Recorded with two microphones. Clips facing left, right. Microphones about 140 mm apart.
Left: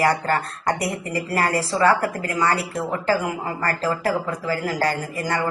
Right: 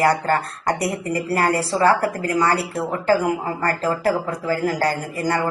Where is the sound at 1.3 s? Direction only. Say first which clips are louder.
Right 2 dB; 30° right (ahead or behind).